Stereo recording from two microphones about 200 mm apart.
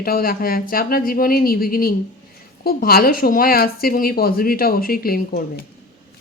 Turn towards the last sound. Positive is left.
turn(degrees=50)  # may be behind; listen again after turning